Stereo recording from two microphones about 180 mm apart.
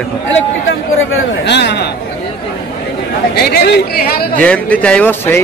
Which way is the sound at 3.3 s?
60° left (ahead or behind).